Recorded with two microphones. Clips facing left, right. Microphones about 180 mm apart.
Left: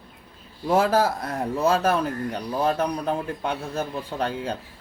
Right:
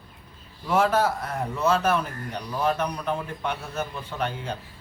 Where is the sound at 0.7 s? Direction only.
35° left (ahead or behind).